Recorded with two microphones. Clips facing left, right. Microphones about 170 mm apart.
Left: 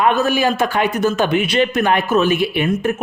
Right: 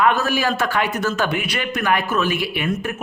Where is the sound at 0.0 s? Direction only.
20° left (ahead or behind).